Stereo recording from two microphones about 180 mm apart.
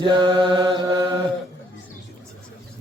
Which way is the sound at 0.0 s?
25° right (ahead or behind).